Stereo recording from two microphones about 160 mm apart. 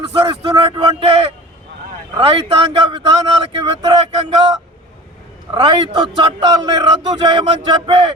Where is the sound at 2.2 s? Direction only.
35° right (ahead or behind).